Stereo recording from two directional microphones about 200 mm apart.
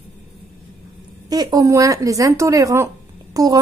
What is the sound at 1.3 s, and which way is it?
A woman's voice, 20° right (ahead or behind).